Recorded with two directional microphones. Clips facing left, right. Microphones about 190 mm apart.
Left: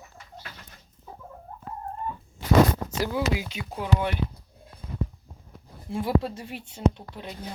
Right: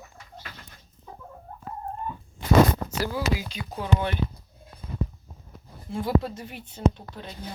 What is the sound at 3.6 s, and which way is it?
Speech, 10° left (ahead or behind).